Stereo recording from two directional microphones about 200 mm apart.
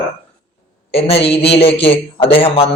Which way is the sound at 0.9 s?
30° left (ahead or behind).